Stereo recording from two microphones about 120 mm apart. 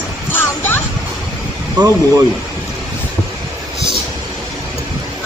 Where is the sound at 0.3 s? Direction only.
15° left (ahead or behind).